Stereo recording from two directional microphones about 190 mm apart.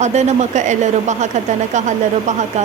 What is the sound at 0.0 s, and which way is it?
A woman's voice, 35° right (ahead or behind).